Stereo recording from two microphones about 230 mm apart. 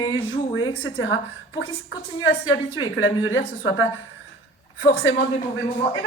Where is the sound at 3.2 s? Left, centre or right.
Left.